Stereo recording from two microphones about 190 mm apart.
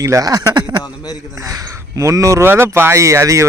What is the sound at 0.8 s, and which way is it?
Speech, 20° left (ahead or behind).